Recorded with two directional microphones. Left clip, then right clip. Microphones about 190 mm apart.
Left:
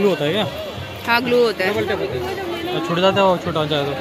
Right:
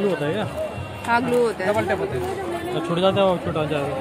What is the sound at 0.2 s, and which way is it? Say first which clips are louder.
Speech: left 5 dB; 35° left (ahead or behind).